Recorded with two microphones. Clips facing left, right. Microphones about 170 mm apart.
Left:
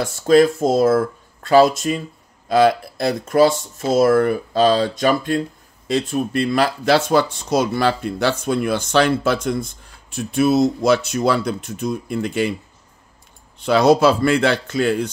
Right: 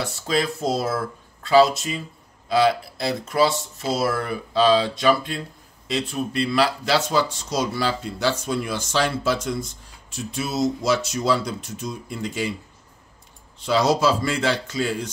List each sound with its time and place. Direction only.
0.0 s speech: 50° left (ahead or behind)
13.7 s speech: 60° left (ahead or behind)